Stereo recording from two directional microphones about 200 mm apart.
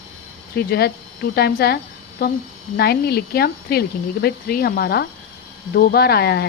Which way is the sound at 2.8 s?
50° left (ahead or behind).